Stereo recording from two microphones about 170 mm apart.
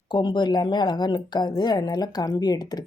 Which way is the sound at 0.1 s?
25° left (ahead or behind).